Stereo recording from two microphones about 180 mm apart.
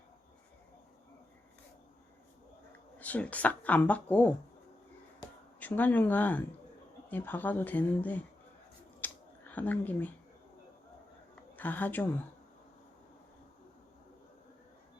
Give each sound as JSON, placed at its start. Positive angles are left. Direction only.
{"t": 3.0, "sound": "speech", "side_deg": 10}
{"t": 5.2, "sound": "a sound", "side_deg": 25}
{"t": 5.5, "sound": "speech", "side_deg": 10}
{"t": 9.0, "sound": "scissors", "side_deg": 10}
{"t": 9.5, "sound": "speech", "side_deg": 10}
{"t": 11.5, "sound": "a woman's voice", "side_deg": 10}